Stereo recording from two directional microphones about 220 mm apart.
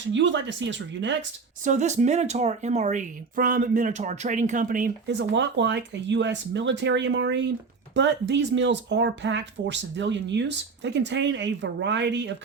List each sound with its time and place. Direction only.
0.0 s speech: 55° right (ahead or behind)
1.6 s speech: 30° right (ahead or behind)
5.0 s speech: 55° right (ahead or behind)